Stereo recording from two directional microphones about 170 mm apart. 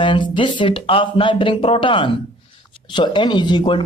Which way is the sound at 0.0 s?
30° left (ahead or behind).